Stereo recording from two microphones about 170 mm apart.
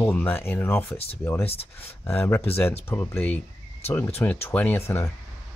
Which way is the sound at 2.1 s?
10° left (ahead or behind).